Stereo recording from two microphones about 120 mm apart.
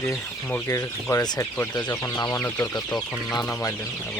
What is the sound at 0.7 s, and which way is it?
Speech, 25° left (ahead or behind).